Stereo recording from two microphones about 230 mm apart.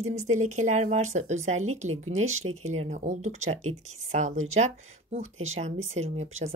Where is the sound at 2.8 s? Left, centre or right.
Right.